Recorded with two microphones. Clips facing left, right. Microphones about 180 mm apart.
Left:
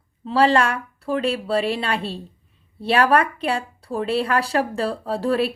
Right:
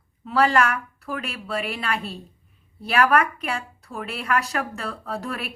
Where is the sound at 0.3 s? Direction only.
30° left (ahead or behind).